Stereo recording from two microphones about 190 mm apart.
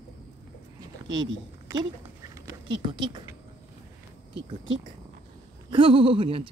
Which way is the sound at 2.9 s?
25° right (ahead or behind).